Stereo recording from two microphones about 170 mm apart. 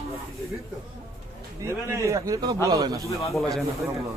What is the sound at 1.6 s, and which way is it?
A man's voice, 15° right (ahead or behind).